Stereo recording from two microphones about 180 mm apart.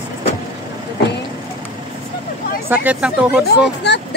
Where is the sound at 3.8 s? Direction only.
70° left (ahead or behind).